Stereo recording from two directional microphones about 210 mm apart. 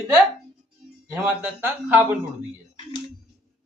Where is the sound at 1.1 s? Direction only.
10° right (ahead or behind).